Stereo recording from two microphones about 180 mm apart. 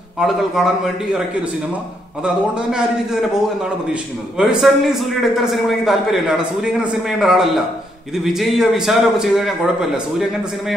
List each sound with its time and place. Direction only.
0.2 s a man's voice: centre (ahead or behind)
2.2 s a man's voice: 5° right (ahead or behind)